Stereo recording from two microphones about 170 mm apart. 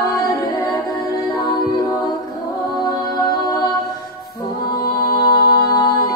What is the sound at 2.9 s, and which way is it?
Music, 20° left (ahead or behind).